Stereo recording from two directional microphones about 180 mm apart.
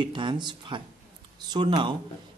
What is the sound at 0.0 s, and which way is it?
Speech, 25° right (ahead or behind).